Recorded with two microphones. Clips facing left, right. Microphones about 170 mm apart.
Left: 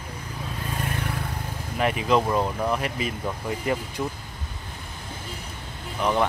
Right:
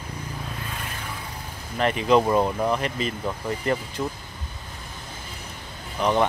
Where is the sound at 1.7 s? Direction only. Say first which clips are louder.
Right 2 dB; 5° left (ahead or behind).